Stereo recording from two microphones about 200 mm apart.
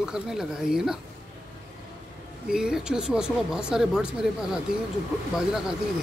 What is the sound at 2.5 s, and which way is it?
Speech, 5° right (ahead or behind).